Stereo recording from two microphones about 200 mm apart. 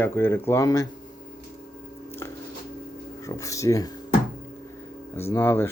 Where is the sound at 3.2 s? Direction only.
15° left (ahead or behind).